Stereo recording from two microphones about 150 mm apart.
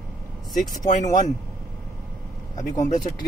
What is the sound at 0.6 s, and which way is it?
Speech, 60° left (ahead or behind).